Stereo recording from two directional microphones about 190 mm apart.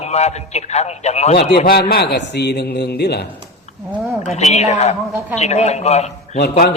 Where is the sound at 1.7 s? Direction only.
55° left (ahead or behind).